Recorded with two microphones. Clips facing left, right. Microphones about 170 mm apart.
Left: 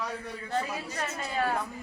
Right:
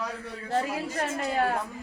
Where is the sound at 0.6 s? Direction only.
50° right (ahead or behind).